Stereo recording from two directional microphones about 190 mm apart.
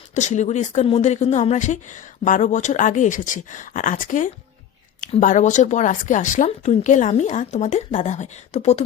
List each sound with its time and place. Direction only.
0.1 s speech: 40° left (ahead or behind)